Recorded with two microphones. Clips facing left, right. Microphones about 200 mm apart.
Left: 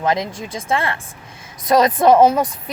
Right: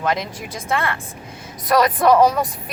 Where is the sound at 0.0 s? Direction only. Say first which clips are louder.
Left 3 dB; 25° left (ahead or behind).